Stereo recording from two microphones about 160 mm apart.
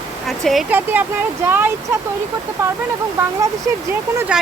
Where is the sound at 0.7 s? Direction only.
10° right (ahead or behind).